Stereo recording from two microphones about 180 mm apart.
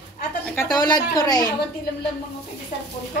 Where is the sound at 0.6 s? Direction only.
20° left (ahead or behind).